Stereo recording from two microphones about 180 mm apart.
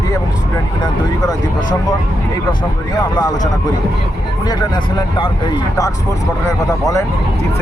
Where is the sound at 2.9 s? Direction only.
20° left (ahead or behind).